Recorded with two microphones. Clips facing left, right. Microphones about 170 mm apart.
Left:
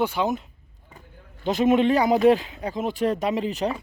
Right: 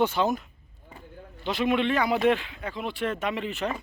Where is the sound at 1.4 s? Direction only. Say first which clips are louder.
Left 6 dB; 45° left (ahead or behind).